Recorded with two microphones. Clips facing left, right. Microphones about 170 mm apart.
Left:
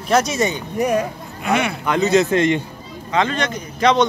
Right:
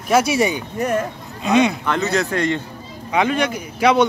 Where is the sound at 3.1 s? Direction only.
10° right (ahead or behind).